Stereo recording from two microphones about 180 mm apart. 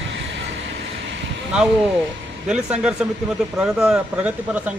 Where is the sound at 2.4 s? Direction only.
5° right (ahead or behind).